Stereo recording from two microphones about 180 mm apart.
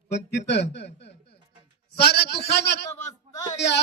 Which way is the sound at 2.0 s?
65° left (ahead or behind).